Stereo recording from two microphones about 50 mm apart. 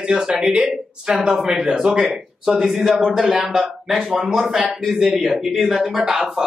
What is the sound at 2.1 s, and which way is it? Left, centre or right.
Speech, centre.